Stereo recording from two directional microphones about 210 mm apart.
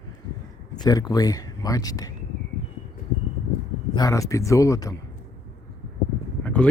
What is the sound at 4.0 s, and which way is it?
Speech, 15° left (ahead or behind).